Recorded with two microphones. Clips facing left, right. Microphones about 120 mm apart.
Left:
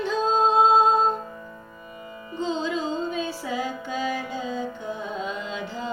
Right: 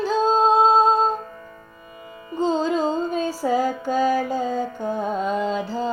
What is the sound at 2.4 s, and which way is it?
Music, 45° right (ahead or behind).